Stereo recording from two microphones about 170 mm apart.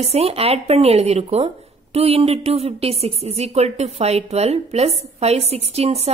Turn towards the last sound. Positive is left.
turn(degrees=-40)  # may be behind; listen again after turning